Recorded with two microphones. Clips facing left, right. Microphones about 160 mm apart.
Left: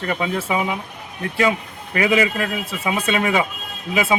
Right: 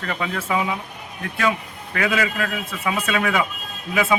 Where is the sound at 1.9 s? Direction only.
15° left (ahead or behind).